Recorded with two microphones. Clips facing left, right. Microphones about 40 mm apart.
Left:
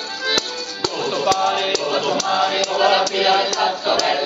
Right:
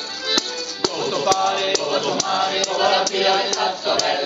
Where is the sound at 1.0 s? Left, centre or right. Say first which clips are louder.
Left 1 dB; left.